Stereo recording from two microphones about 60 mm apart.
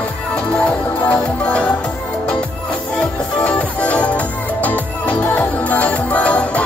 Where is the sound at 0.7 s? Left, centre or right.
Left.